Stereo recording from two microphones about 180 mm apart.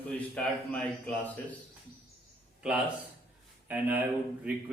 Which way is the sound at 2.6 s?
5° right (ahead or behind).